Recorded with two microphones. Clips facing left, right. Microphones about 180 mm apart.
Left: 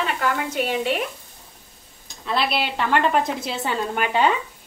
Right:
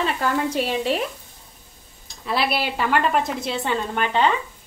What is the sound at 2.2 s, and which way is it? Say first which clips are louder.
A woman's voice: even; 5° right (ahead or behind).